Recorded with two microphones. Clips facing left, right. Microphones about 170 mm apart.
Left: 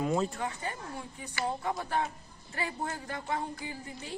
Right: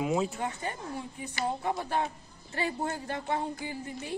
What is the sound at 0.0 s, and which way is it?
Speech, 5° right (ahead or behind).